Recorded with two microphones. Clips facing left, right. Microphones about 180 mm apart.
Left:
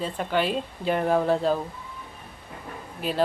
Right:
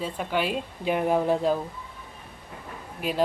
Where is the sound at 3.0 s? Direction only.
10° right (ahead or behind).